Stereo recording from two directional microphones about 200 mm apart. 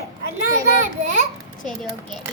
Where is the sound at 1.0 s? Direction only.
35° right (ahead or behind).